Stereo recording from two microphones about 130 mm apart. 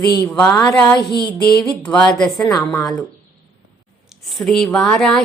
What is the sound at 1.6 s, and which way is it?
Speech, 10° left (ahead or behind).